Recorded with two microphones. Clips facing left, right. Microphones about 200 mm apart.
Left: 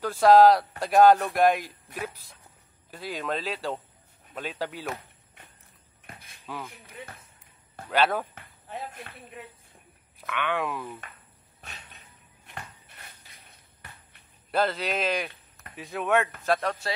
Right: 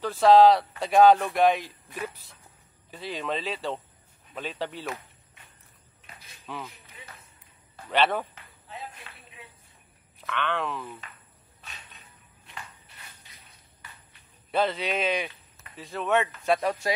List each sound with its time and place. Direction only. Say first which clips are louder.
0.2 s speech: even; 10° left (ahead or behind)
6.4 s speech: even; 5° left (ahead or behind)
7.0 s basketball bounce: left 7 dB; 60° left (ahead or behind)
7.9 s speech: even; 5° left (ahead or behind)
8.6 s basketball bounce: left 4 dB; 50° left (ahead or behind)
10.2 s speech: left 1 dB; 10° left (ahead or behind)
12.4 s a sound: left 2 dB; 55° left (ahead or behind)
14.5 s speech: even; 5° left (ahead or behind)
15.7 s speech: even; 15° left (ahead or behind)
16.4 s speech: right 2 dB; centre (ahead or behind)